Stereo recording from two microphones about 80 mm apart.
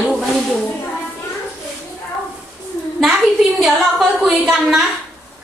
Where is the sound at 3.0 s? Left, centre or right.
Centre.